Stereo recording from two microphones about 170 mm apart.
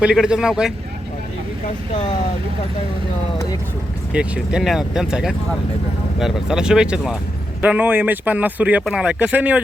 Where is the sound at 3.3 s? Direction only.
20° left (ahead or behind).